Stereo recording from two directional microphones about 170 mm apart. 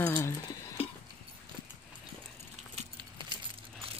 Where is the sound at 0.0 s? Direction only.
15° left (ahead or behind).